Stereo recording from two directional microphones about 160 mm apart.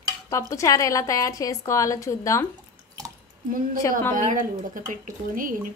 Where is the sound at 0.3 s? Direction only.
20° left (ahead or behind).